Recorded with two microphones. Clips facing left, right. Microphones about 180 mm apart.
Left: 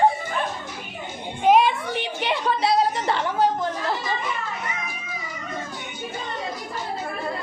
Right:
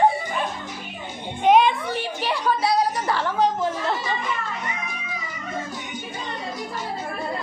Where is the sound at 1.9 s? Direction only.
20° left (ahead or behind).